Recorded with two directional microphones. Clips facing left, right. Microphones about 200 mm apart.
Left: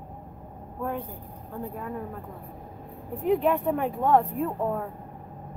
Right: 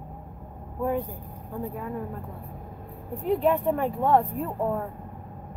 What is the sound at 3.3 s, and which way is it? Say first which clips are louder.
A woman's voice: even; centre (ahead or behind).